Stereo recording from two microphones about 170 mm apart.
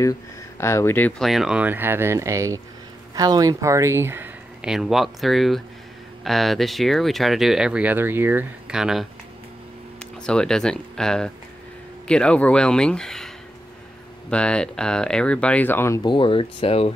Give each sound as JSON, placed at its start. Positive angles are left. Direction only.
{"t": 0.6, "sound": "speech", "side_deg": 15}
{"t": 14.3, "sound": "speech", "side_deg": 5}
{"t": 16.1, "sound": "speech", "side_deg": 30}